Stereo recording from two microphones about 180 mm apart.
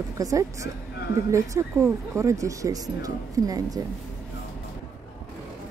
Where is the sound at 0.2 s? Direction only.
20° right (ahead or behind).